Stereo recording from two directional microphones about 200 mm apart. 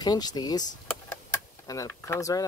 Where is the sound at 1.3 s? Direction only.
15° left (ahead or behind).